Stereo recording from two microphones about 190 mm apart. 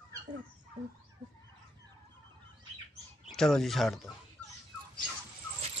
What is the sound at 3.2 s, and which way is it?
Speech, 5° left (ahead or behind).